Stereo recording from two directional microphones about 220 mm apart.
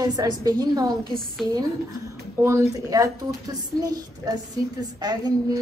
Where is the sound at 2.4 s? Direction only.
10° right (ahead or behind).